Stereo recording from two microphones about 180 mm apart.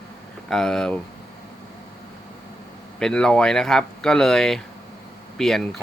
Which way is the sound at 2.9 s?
5° left (ahead or behind).